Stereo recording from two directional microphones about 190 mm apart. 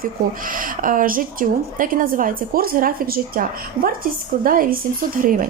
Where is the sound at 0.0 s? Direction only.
45° right (ahead or behind).